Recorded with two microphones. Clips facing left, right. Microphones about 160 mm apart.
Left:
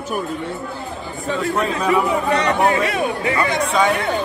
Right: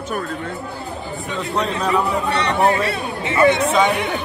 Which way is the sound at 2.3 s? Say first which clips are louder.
Right 1 dB; 35° right (ahead or behind).